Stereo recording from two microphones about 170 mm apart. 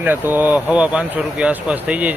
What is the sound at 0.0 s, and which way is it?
Speech, 10° right (ahead or behind).